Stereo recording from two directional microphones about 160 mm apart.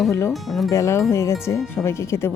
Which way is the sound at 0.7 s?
20° left (ahead or behind).